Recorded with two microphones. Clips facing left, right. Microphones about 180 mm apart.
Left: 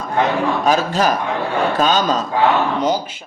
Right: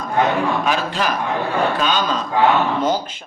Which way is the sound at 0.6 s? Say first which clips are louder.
Left 4 dB; 40° left (ahead or behind).